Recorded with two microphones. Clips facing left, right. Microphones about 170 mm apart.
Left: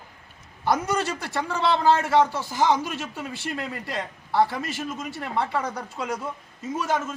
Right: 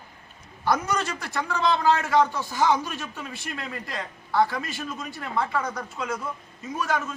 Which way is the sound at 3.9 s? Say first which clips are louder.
Left 1 dB; 30° left (ahead or behind).